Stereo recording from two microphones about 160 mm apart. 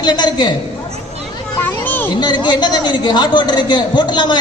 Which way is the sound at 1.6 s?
10° left (ahead or behind).